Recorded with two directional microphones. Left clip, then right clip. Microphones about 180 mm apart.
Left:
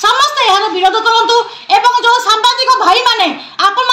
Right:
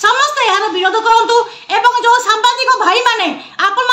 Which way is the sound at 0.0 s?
Centre (ahead or behind).